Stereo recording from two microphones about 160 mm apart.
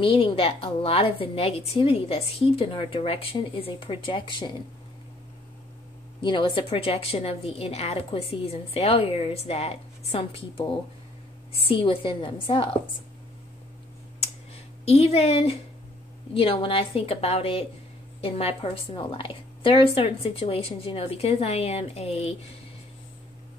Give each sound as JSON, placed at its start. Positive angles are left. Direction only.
{"t": 0.0, "sound": "a woman's voice", "side_deg": 35}
{"t": 6.2, "sound": "a woman's voice", "side_deg": 30}
{"t": 14.9, "sound": "a woman's voice", "side_deg": 40}